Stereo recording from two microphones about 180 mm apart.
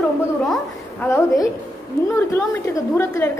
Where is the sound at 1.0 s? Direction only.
15° left (ahead or behind).